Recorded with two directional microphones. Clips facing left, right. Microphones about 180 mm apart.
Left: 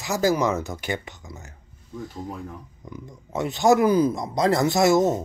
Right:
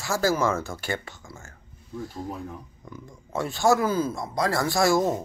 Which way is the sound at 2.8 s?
20° left (ahead or behind).